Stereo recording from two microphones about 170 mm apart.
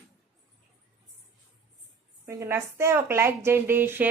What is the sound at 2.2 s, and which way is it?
A woman's voice, 15° right (ahead or behind).